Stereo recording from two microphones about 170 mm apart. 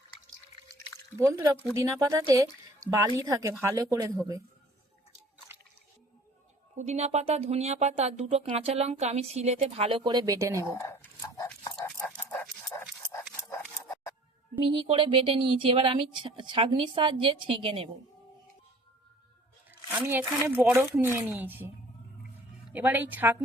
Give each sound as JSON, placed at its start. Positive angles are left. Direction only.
{"t": 0.7, "sound": "a sound", "side_deg": -20}
{"t": 1.7, "sound": "speech", "side_deg": -20}
{"t": 6.7, "sound": "speech", "side_deg": -40}
{"t": 10.7, "sound": "whispering", "side_deg": 20}
{"t": 12.0, "sound": "dog", "side_deg": 10}
{"t": 13.3, "sound": "scissors", "side_deg": 15}
{"t": 14.6, "sound": "speech", "side_deg": -30}
{"t": 19.9, "sound": "speech", "side_deg": -10}
{"t": 22.7, "sound": "speech", "side_deg": -10}